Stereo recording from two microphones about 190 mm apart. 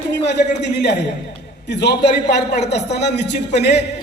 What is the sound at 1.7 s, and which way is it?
A man's voice, 65° left (ahead or behind).